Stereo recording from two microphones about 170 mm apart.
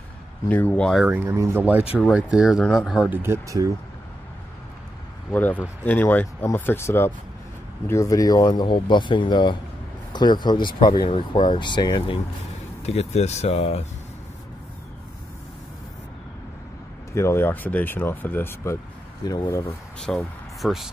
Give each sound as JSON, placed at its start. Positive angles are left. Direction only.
{"t": 0.5, "sound": "speech", "side_deg": 10}
{"t": 1.0, "sound": "speech", "side_deg": -10}
{"t": 5.3, "sound": "speech", "side_deg": 10}
{"t": 12.8, "sound": "speech", "side_deg": 40}
{"t": 17.1, "sound": "speech", "side_deg": 15}
{"t": 20.1, "sound": "speech", "side_deg": 5}